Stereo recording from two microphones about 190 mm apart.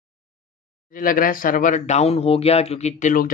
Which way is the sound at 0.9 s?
45° left (ahead or behind).